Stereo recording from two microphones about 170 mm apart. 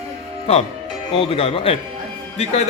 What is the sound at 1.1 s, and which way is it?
Speech, 35° left (ahead or behind).